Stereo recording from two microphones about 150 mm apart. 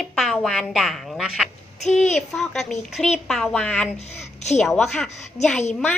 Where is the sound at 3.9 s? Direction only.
50° left (ahead or behind).